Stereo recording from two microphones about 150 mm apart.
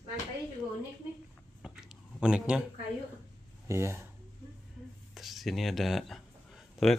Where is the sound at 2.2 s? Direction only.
5° right (ahead or behind).